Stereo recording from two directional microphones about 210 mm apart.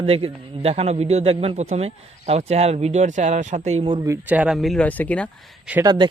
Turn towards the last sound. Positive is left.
turn(degrees=-20)  # may be behind; listen again after turning